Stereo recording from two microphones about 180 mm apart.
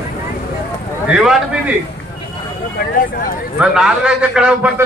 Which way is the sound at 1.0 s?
5° right (ahead or behind).